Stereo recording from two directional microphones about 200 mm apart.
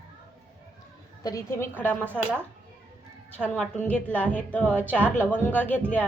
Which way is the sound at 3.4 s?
5° left (ahead or behind).